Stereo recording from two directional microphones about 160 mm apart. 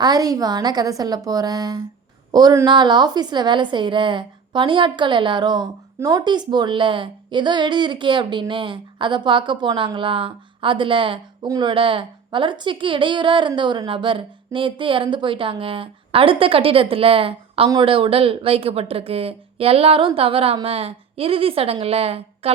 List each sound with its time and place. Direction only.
0.0 s a woman's voice: 25° right (ahead or behind)